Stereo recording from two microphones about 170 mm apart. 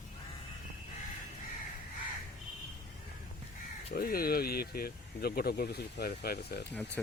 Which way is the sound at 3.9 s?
60° left (ahead or behind).